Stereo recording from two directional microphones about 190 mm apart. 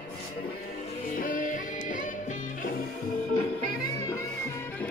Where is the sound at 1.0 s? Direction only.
45° left (ahead or behind).